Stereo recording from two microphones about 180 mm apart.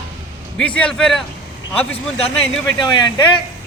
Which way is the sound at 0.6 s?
5° left (ahead or behind).